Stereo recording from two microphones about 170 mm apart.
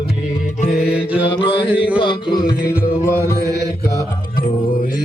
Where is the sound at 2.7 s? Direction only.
15° left (ahead or behind).